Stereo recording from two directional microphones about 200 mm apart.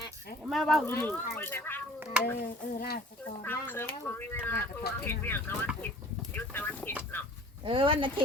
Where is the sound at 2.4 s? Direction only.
50° left (ahead or behind).